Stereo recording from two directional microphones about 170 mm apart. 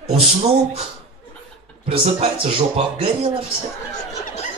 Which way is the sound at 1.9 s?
35° right (ahead or behind).